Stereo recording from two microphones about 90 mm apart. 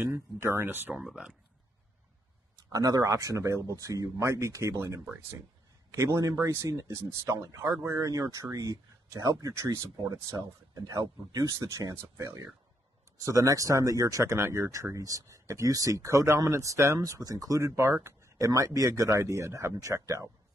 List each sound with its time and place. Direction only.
0.1 s speech: 25° right (ahead or behind)
1.0 s speech: 10° right (ahead or behind)
2.7 s speech: 40° right (ahead or behind)
17.0 s speech: 40° right (ahead or behind)